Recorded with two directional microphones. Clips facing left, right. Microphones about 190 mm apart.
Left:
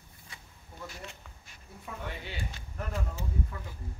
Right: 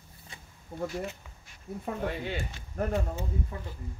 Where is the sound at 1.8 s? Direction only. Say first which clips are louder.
Right 8 dB; 50° right (ahead or behind).